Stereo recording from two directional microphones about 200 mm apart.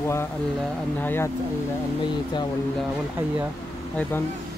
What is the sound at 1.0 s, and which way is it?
Speech, 10° left (ahead or behind).